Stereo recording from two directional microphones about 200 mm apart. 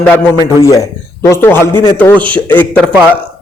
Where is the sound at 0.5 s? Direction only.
15° left (ahead or behind).